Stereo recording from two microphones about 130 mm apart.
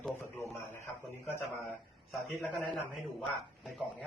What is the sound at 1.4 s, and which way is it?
Speech, centre (ahead or behind).